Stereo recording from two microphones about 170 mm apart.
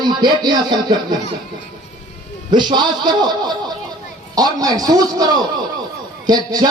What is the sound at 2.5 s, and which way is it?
A man's voice, 25° right (ahead or behind).